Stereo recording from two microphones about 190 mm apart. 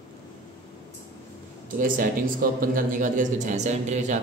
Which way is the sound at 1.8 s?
45° right (ahead or behind).